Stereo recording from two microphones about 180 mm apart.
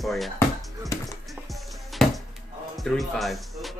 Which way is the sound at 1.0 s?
Centre (ahead or behind).